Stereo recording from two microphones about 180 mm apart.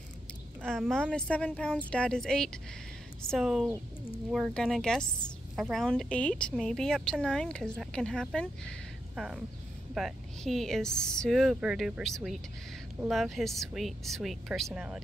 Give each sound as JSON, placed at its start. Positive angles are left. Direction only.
{"t": 0.7, "sound": "speech", "side_deg": 0}